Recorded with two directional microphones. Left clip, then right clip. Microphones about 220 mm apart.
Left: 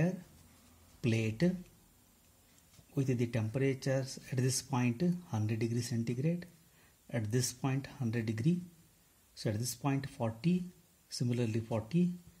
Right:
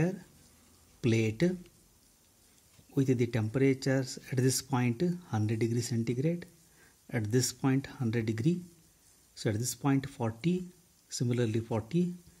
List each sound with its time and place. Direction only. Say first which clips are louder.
1.0 s speech: right 5 dB; 25° right (ahead or behind)
2.9 s speech: right 6 dB; 30° right (ahead or behind)